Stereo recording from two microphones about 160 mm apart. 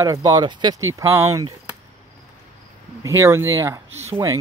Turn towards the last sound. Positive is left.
turn(degrees=-20)  # may be behind; listen again after turning